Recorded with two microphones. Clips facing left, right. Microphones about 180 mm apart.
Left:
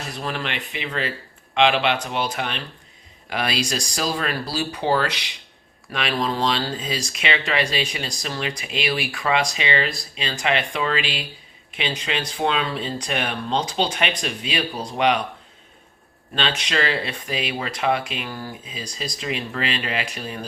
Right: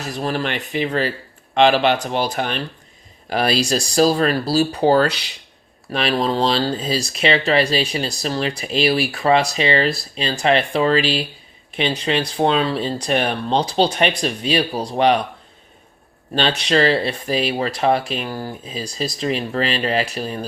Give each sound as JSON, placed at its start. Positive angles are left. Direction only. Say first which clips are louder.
{"t": 0.0, "sound": "speech", "louder": "right 6 dB", "side_deg": -40}
{"t": 16.3, "sound": "speech", "louder": "right 6 dB", "side_deg": -35}